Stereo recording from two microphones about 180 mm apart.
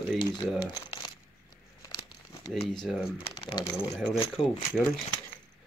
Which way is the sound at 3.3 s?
30° left (ahead or behind).